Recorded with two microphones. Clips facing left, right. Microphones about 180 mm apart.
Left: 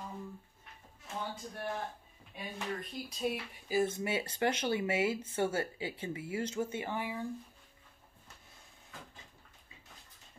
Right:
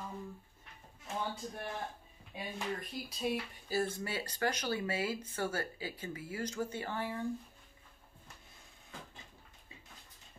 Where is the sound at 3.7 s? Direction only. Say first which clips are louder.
Left 4 dB; 15° left (ahead or behind).